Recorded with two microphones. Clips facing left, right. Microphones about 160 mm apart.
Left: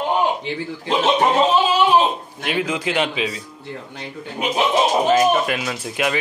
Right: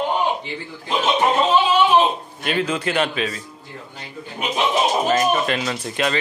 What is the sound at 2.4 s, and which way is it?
Speech, 10° left (ahead or behind).